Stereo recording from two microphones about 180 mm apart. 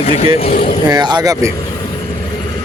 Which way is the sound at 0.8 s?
25° right (ahead or behind).